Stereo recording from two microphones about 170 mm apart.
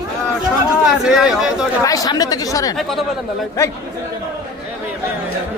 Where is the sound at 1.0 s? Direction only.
Centre (ahead or behind).